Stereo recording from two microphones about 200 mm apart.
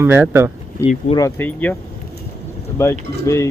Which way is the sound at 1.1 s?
15° left (ahead or behind).